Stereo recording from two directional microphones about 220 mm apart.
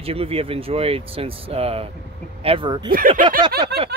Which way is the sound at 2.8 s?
40° right (ahead or behind).